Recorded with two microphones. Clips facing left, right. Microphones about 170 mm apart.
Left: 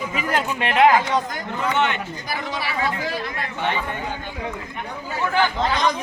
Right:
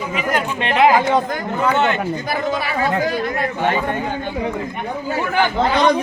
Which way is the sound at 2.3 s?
50° right (ahead or behind).